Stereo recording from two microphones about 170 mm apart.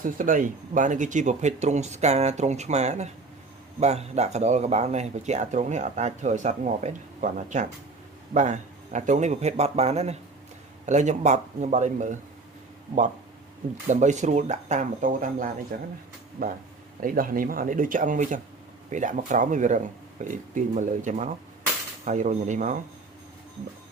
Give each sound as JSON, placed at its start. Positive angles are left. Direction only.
{"t": 0.0, "sound": "speech", "side_deg": -50}
{"t": 13.8, "sound": "speech", "side_deg": -45}